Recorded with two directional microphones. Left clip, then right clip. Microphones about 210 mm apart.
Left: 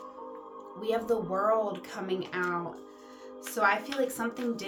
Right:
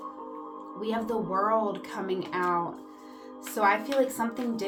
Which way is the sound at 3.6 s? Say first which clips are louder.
Right 3 dB; 10° left (ahead or behind).